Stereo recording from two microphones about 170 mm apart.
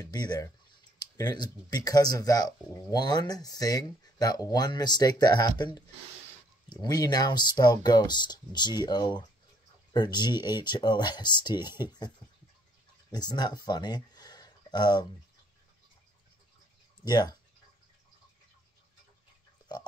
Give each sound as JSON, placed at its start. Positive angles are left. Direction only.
{"t": 0.0, "sound": "speech", "side_deg": 25}
{"t": 13.1, "sound": "speech", "side_deg": 25}
{"t": 17.0, "sound": "speech", "side_deg": 25}